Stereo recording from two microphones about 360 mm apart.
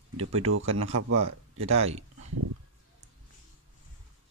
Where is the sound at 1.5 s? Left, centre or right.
Centre.